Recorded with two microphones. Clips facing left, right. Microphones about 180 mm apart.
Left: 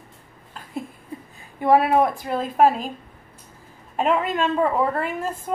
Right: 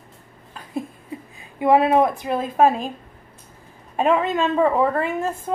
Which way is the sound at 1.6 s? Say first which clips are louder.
Right 1 dB; 20° right (ahead or behind).